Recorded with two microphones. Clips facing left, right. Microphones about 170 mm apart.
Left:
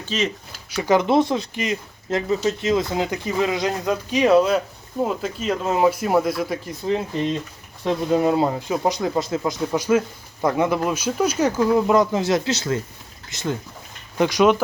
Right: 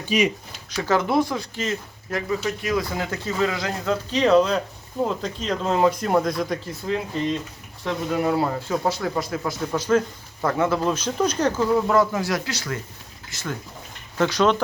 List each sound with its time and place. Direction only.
0.0 s speech: 10° right (ahead or behind)
0.8 s speech: 15° left (ahead or behind)
6.7 s a man's voice: 20° left (ahead or behind)